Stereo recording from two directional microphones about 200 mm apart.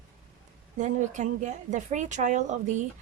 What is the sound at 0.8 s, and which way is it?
A woman's voice, 35° right (ahead or behind).